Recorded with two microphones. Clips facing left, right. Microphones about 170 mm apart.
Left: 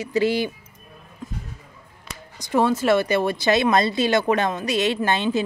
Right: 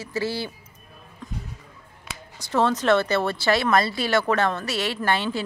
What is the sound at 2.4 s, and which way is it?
Speech, 15° left (ahead or behind).